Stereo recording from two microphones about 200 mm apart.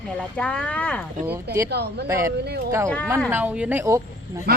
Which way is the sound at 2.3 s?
55° right (ahead or behind).